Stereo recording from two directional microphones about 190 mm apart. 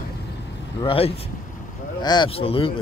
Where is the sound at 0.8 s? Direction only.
30° left (ahead or behind).